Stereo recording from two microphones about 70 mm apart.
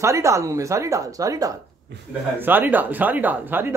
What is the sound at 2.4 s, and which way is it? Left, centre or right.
Speech, right.